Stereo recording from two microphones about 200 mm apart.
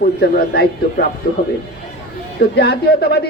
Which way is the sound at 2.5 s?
55° left (ahead or behind).